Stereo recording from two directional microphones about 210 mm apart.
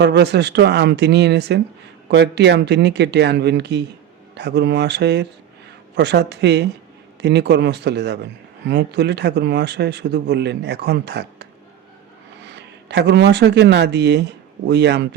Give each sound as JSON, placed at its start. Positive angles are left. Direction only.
{"t": 0.0, "sound": "speech", "side_deg": -55}